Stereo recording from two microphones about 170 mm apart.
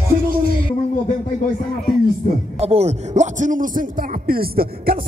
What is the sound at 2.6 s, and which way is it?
A man's voice, 40° right (ahead or behind).